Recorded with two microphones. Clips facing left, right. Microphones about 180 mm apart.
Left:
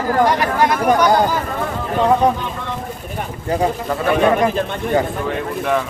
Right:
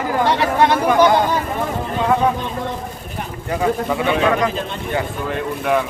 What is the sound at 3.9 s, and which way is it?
Speech, centre (ahead or behind).